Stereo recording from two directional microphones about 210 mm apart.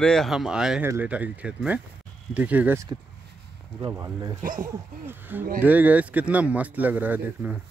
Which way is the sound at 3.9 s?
15° right (ahead or behind).